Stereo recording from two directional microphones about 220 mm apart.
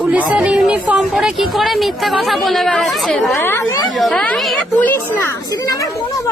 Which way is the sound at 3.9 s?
Centre (ahead or behind).